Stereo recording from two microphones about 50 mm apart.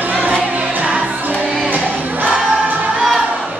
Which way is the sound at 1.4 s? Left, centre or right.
Right.